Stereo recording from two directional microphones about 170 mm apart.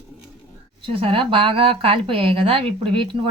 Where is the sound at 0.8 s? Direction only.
30° right (ahead or behind).